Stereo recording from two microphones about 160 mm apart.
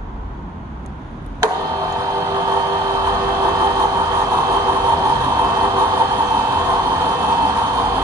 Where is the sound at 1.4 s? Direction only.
20° right (ahead or behind).